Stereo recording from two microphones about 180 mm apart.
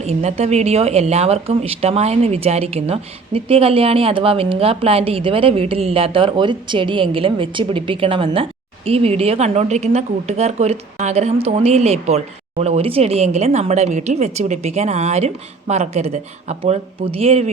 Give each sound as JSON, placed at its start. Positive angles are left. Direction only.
{"t": 0.0, "sound": "a woman's voice", "side_deg": -35}